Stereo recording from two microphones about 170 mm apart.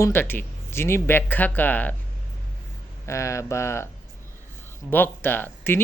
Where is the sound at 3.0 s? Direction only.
15° left (ahead or behind).